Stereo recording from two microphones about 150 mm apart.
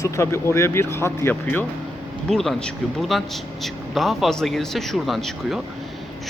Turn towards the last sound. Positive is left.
turn(degrees=0)  # may be behind; listen again after turning